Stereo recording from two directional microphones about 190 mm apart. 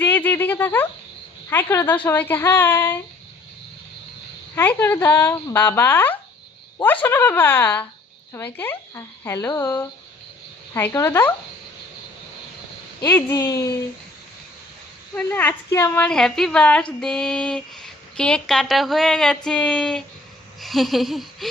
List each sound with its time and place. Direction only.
0.0 s a sound: 10° left (ahead or behind)
1.5 s speech: 10° left (ahead or behind)
4.5 s speech: 10° left (ahead or behind)
13.1 s speech: 15° left (ahead or behind)
15.1 s a woman's voice: 10° left (ahead or behind)